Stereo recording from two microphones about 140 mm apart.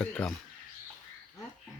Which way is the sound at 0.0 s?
5° left (ahead or behind).